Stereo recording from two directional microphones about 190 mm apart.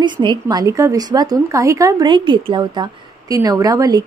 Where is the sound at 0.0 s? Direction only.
25° right (ahead or behind).